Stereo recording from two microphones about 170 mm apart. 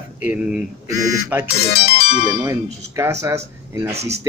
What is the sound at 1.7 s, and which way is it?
Music, 35° left (ahead or behind).